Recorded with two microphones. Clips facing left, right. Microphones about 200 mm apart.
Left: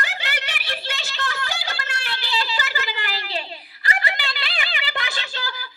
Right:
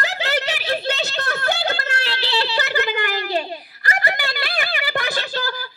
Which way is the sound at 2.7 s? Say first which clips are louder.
Right 8 dB; 50° right (ahead or behind).